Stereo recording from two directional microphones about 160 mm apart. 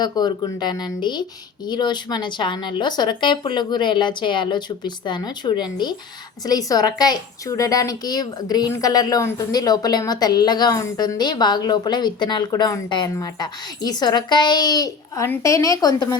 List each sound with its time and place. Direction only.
0.0 s a woman's voice: 25° left (ahead or behind)